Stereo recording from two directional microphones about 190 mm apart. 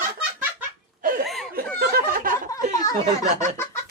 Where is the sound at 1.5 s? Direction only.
50° right (ahead or behind).